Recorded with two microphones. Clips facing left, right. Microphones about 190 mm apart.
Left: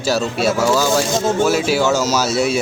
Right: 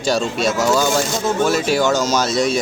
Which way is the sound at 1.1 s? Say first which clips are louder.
Left 2 dB; 25° left (ahead or behind).